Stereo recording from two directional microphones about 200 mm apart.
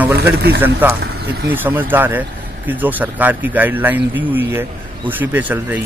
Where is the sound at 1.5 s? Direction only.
10° right (ahead or behind).